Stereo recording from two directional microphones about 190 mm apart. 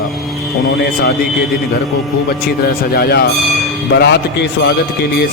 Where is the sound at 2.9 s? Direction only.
55° left (ahead or behind).